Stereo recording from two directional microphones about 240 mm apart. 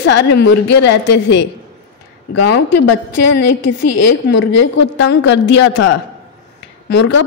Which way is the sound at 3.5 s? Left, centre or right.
Left.